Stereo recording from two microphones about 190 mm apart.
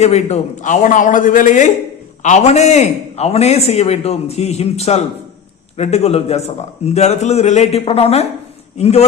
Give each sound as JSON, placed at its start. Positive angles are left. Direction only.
{"t": 0.0, "sound": "a man's voice", "side_deg": 35}